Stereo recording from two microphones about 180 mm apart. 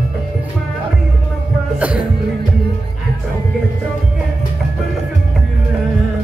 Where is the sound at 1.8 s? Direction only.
5° right (ahead or behind).